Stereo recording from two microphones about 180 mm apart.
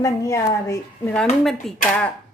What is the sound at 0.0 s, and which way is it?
Speech, 15° left (ahead or behind).